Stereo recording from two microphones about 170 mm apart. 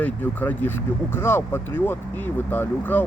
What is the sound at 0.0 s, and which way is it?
Speech, 10° left (ahead or behind).